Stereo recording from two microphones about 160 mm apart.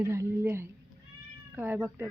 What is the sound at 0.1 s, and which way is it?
A woman's voice, 15° right (ahead or behind).